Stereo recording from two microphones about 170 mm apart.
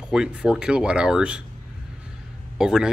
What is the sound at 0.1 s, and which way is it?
Speech, 5° right (ahead or behind).